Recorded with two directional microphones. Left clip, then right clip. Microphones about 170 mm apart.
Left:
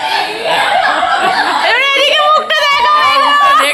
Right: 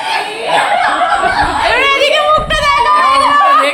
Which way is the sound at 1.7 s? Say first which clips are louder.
Even; 50° left (ahead or behind).